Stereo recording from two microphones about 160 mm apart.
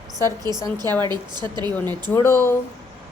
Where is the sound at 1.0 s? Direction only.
25° right (ahead or behind).